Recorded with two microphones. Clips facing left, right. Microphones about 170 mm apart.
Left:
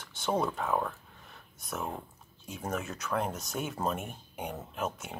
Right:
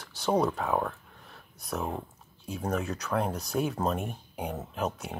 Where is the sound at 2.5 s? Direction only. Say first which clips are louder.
Right 5 dB; centre (ahead or behind).